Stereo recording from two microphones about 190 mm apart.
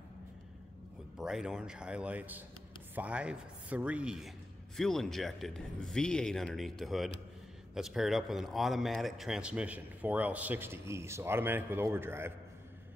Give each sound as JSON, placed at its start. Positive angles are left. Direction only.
{"t": 1.1, "sound": "a man's voice", "side_deg": -5}